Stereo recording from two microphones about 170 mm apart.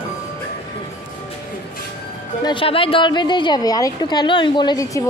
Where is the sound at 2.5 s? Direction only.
30° left (ahead or behind).